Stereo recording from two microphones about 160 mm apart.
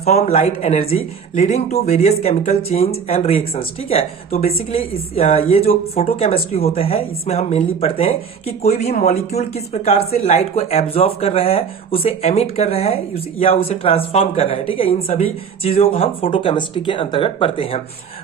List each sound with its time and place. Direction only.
0.3 s speech: 40° left (ahead or behind)